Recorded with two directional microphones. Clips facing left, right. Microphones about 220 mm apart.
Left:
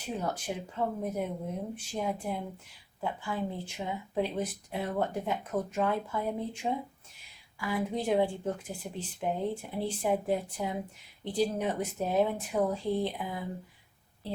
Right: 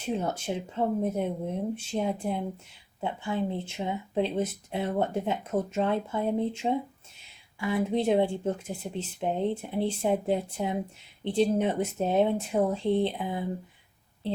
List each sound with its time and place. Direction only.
0.0 s speech: 25° right (ahead or behind)